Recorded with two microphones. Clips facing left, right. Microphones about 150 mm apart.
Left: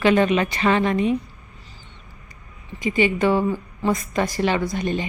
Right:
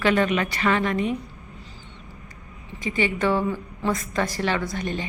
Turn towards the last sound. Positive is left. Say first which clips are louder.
# left 4 dB
turn(degrees=15)  # may be behind; listen again after turning